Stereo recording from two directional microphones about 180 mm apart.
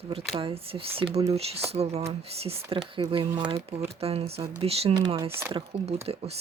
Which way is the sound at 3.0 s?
20° right (ahead or behind).